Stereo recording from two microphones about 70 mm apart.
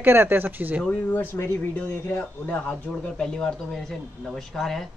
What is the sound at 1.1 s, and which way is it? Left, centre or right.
Speech, left.